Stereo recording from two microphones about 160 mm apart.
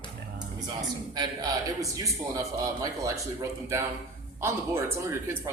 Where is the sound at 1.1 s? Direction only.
25° right (ahead or behind).